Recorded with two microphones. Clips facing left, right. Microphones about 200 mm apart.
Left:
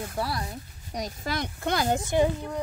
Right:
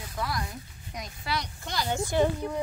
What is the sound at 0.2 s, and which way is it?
Speech, 30° left (ahead or behind).